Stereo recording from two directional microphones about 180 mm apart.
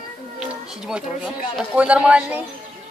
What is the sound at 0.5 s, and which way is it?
Speech, 5° right (ahead or behind).